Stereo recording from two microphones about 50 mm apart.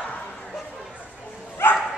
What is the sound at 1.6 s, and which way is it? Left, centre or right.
Dog, left.